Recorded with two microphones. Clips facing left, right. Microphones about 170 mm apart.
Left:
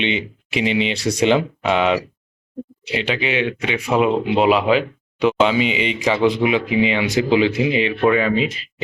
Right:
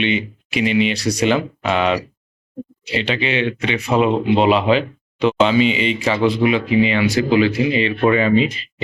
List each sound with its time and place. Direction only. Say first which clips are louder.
0.0 s speech: right 2 dB; 25° left (ahead or behind)
8.0 s speech: right 3 dB; centre (ahead or behind)